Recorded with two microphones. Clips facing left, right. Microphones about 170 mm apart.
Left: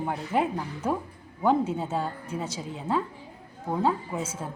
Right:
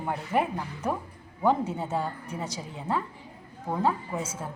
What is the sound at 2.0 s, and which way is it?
Speech, 25° left (ahead or behind).